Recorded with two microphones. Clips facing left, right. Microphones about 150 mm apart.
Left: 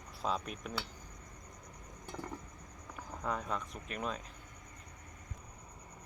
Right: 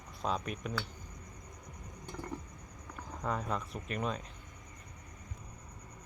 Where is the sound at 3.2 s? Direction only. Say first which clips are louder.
Right 2 dB; centre (ahead or behind).